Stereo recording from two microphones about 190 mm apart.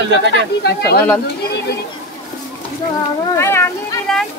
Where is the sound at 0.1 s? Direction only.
65° right (ahead or behind).